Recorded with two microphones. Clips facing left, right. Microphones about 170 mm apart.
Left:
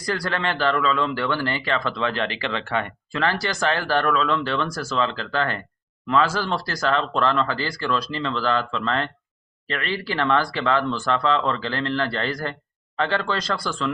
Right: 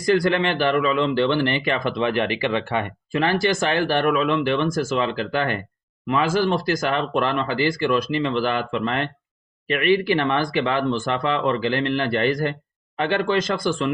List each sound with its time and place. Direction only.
0.0 s a man's voice: 20° right (ahead or behind)